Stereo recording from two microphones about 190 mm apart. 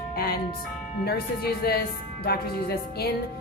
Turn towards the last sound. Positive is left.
turn(degrees=55)  # may be behind; listen again after turning